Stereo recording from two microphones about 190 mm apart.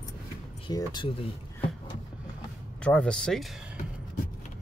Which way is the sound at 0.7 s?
25° left (ahead or behind).